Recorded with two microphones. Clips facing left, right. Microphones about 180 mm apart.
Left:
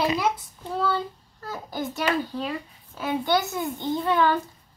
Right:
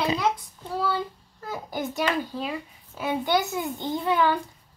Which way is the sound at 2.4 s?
15° right (ahead or behind).